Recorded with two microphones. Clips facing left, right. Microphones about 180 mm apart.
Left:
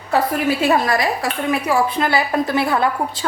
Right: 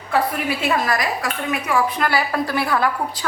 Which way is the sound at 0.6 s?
30° left (ahead or behind).